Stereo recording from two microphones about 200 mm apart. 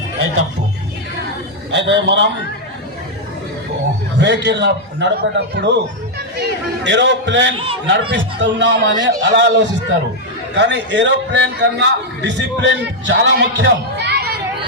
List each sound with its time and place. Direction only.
1.7 s a man's voice: 60° right (ahead or behind)
4.2 s a man's voice: 60° right (ahead or behind)